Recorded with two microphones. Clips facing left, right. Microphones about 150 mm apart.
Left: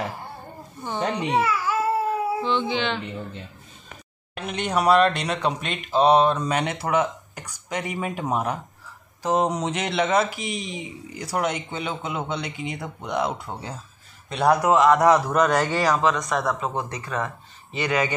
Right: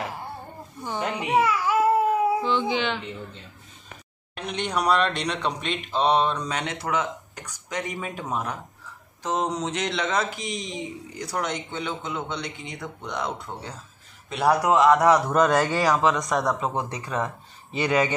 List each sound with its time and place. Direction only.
1.1 s babbling: 10° right (ahead or behind)
2.4 s speech: 10° right (ahead or behind)
4.4 s speech: 5° left (ahead or behind)
14.3 s speech: 5° right (ahead or behind)
15.1 s speech: 10° left (ahead or behind)
15.6 s speech: 5° right (ahead or behind)
16.0 s speech: 20° right (ahead or behind)
17.8 s speech: 30° right (ahead or behind)